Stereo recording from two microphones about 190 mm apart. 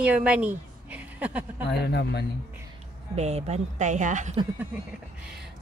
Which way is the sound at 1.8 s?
60° left (ahead or behind).